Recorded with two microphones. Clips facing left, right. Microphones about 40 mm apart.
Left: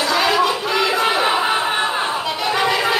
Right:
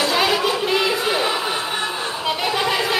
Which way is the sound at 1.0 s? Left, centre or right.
Left.